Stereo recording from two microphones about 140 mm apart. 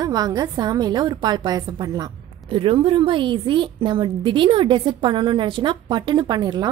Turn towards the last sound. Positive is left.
turn(degrees=-30)  # may be behind; listen again after turning